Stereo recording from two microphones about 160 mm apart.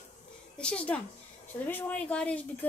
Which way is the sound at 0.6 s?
5° left (ahead or behind).